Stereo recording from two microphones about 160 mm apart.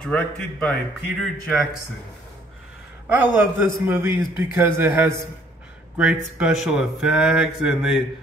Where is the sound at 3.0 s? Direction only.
10° right (ahead or behind).